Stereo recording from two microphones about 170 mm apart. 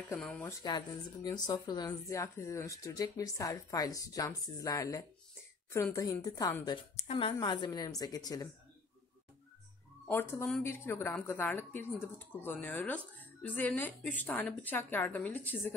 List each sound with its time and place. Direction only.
0.2 s speech: 5° left (ahead or behind)
0.5 s speech: 20° left (ahead or behind)
7.1 s speech: 35° left (ahead or behind)
10.0 s speech: 10° left (ahead or behind)